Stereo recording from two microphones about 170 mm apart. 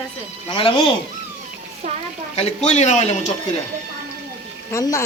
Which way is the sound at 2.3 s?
40° left (ahead or behind).